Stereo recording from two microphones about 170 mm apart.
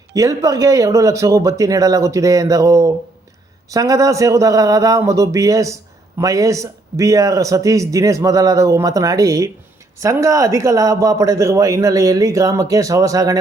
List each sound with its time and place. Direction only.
0.1 s speech: 20° right (ahead or behind)